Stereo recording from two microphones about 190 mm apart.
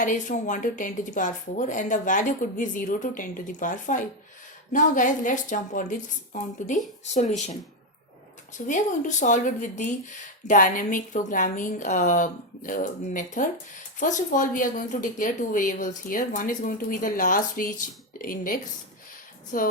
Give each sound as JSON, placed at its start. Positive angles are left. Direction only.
{"t": 0.0, "sound": "a woman's voice", "side_deg": 45}
{"t": 8.5, "sound": "a woman's voice", "side_deg": 40}